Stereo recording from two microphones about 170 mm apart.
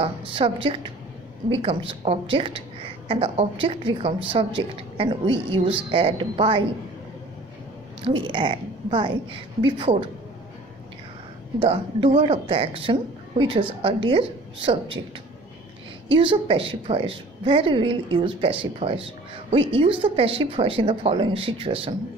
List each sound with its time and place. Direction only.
0.0 s a woman's voice: 30° right (ahead or behind)
8.0 s a woman's voice: 30° right (ahead or behind)
11.6 s a woman's voice: 30° right (ahead or behind)
16.1 s a woman's voice: 30° right (ahead or behind)